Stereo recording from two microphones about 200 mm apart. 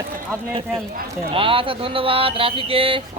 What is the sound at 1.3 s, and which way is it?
Speech, 25° right (ahead or behind).